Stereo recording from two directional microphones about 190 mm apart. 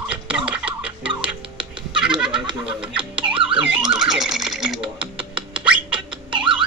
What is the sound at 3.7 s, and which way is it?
Music, 5° right (ahead or behind).